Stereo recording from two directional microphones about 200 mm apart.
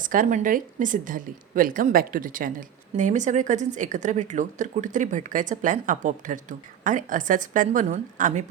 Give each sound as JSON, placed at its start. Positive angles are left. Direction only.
{"t": 0.0, "sound": "a woman's voice", "side_deg": -40}